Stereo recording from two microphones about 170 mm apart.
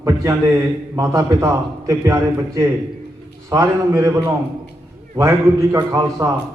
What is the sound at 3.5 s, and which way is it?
A man's voice, 20° right (ahead or behind).